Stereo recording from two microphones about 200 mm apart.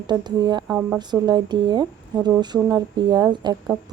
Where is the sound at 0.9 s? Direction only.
20° right (ahead or behind).